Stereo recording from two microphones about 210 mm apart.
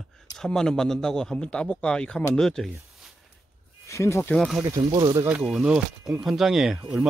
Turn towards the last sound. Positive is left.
turn(degrees=0)  # may be behind; listen again after turning